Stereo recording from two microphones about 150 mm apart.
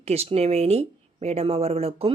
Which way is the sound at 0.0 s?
45° right (ahead or behind).